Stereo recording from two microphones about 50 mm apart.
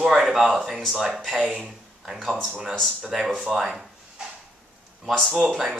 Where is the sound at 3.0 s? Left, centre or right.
Centre.